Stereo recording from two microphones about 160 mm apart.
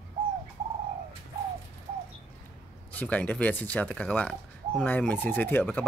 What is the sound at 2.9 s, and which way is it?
Speech, 10° left (ahead or behind).